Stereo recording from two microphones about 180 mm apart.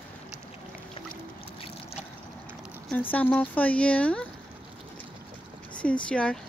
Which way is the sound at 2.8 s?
10° left (ahead or behind).